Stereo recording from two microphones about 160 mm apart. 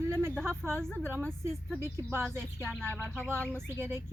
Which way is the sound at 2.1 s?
15° right (ahead or behind).